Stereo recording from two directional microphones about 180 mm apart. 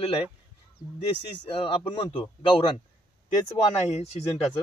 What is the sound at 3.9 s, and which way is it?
Speech, 35° left (ahead or behind).